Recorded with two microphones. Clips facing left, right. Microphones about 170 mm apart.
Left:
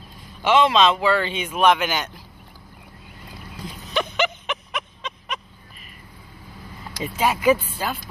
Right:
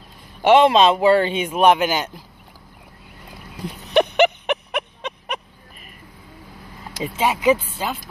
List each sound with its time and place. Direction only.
0.4 s a man's voice: 55° right (ahead or behind); by 2.0 s 40° right (ahead or behind)
3.6 s a sound: 60° right (ahead or behind)
7.0 s speech: 20° right (ahead or behind)